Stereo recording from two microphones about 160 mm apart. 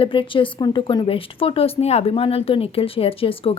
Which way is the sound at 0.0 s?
30° left (ahead or behind).